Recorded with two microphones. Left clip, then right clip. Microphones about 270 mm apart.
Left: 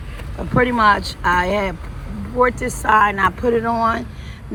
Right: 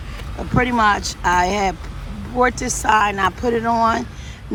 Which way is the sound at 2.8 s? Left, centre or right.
Centre.